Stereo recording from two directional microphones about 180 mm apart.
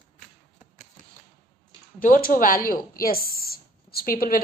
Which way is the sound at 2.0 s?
50° left (ahead or behind).